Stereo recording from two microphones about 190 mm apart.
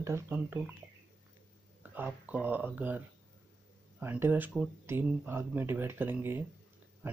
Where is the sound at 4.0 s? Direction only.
10° right (ahead or behind).